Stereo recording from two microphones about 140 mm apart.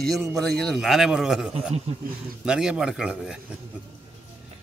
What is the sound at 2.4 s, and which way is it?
Speech, 5° right (ahead or behind).